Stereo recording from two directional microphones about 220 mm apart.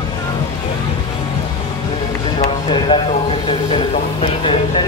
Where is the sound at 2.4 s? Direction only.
25° left (ahead or behind).